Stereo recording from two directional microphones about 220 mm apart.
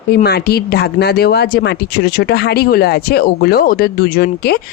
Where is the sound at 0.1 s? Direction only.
45° left (ahead or behind).